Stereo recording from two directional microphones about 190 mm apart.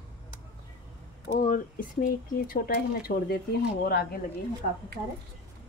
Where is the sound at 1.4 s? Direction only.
45° left (ahead or behind).